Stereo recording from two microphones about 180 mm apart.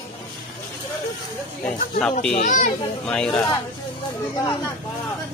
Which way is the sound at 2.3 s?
45° left (ahead or behind).